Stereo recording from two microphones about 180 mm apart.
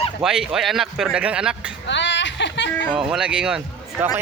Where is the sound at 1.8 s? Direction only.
80° left.